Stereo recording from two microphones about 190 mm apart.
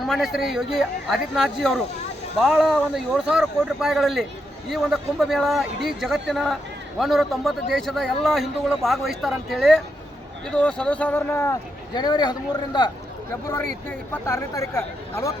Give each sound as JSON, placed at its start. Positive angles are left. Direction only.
{"t": 0.0, "sound": "a man's voice", "side_deg": 0}
{"t": 11.9, "sound": "a man's voice", "side_deg": 25}
{"t": 14.1, "sound": "speech", "side_deg": 15}